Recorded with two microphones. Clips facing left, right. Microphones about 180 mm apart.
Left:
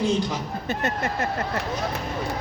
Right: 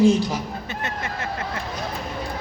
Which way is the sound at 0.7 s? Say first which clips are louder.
Left 6 dB; 40° left (ahead or behind).